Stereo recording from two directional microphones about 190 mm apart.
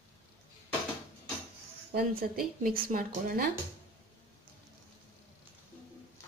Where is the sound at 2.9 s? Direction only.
50° right (ahead or behind).